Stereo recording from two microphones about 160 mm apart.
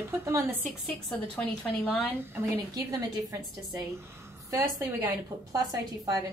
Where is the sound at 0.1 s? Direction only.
20° right (ahead or behind).